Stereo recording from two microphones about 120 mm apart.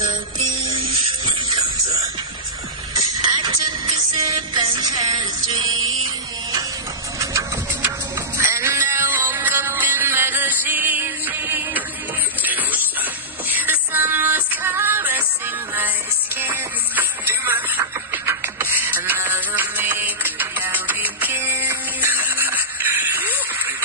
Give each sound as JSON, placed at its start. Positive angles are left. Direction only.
{"t": 0.7, "sound": "electric toothbrush", "side_deg": -40}
{"t": 2.9, "sound": "music", "side_deg": -35}
{"t": 8.4, "sound": "music", "side_deg": -20}